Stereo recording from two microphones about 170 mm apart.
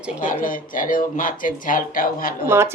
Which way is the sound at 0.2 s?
50° left (ahead or behind).